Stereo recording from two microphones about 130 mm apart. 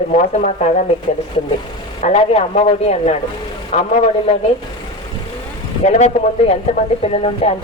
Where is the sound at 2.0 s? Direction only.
55° left (ahead or behind).